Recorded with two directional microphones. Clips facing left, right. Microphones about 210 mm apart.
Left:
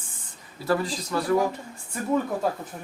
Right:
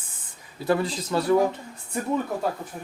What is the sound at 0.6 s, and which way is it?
Speech, 20° right (ahead or behind).